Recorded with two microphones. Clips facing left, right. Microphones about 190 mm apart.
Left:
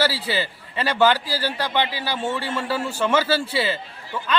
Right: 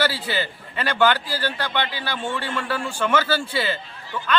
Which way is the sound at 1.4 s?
10° left (ahead or behind).